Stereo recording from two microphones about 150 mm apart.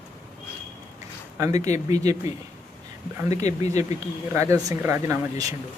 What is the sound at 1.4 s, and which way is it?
Speech, 20° right (ahead or behind).